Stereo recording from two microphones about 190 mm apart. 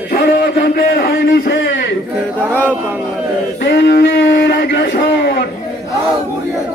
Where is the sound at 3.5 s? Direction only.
60° left (ahead or behind).